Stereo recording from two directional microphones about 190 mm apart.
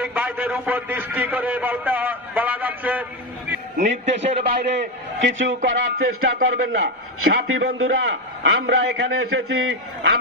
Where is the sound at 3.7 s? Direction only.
35° right (ahead or behind).